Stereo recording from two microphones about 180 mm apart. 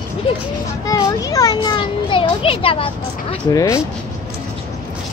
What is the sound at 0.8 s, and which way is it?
A child's voice, 20° left (ahead or behind).